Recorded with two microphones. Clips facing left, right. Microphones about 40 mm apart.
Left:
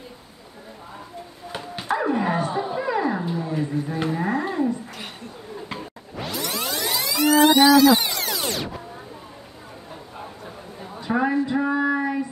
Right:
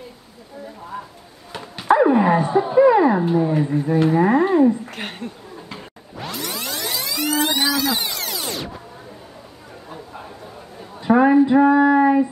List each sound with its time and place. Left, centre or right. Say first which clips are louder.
1.9 s dog: right 8 dB; centre
3.3 s speech: right 7 dB; right
4.9 s speech: right 6 dB; right
6.2 s music: even; centre
11.0 s a sound: right 8 dB; centre